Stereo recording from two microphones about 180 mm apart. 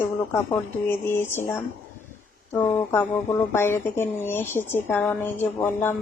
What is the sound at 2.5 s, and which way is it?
A woman's voice, 15° left (ahead or behind).